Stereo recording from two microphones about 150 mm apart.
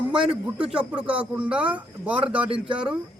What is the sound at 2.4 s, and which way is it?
Speech, 35° right (ahead or behind).